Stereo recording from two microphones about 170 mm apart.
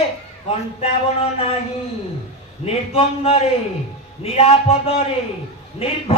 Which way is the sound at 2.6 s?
35° left (ahead or behind).